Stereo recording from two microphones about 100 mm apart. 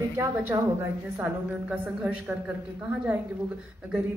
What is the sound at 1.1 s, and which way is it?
A woman's voice, 15° right (ahead or behind).